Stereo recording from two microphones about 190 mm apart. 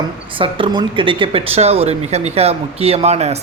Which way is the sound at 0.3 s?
25° right (ahead or behind).